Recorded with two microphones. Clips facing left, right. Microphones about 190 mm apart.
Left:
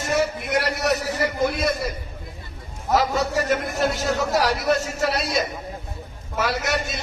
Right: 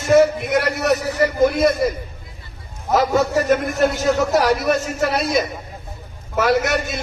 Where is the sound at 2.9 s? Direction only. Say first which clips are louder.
Right 4 dB; 55° right (ahead or behind).